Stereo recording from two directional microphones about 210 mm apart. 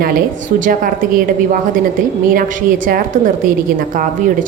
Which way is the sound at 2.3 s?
40° right (ahead or behind).